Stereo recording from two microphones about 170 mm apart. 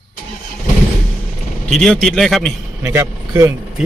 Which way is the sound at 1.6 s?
5° left (ahead or behind).